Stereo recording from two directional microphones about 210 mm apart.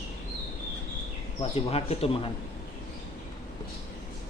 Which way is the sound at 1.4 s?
25° left (ahead or behind).